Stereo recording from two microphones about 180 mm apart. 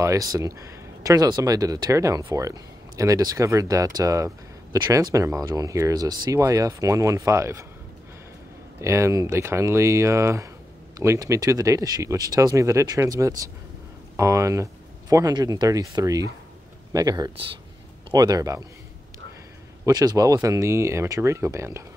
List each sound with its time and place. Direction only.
0.0 s speech: 20° right (ahead or behind)
8.8 s speech: 15° right (ahead or behind)
19.8 s speech: 20° right (ahead or behind)